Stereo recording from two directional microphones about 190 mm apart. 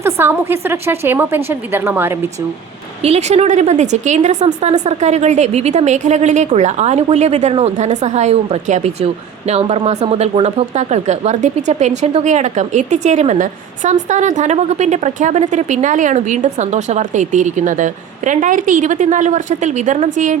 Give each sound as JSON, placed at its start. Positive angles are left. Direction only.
{"t": 0.0, "sound": "a woman's voice", "side_deg": -15}
{"t": 3.0, "sound": "speech", "side_deg": -35}